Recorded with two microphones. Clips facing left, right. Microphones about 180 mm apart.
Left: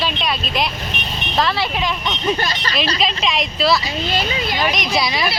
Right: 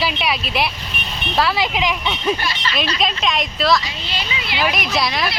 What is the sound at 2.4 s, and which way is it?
Speech, 40° left (ahead or behind).